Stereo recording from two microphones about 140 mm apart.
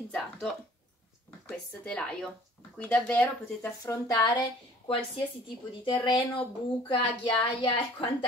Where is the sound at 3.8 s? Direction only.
25° left (ahead or behind).